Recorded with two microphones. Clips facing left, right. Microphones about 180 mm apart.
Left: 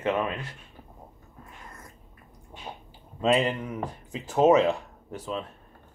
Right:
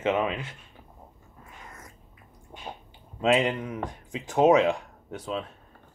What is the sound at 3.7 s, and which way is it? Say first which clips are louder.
Speech: even; 5° left (ahead or behind).